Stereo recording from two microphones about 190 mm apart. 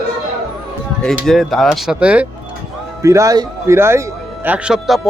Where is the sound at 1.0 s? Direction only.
Centre (ahead or behind).